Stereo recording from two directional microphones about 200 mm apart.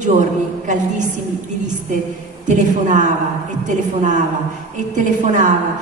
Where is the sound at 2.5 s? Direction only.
40° right (ahead or behind).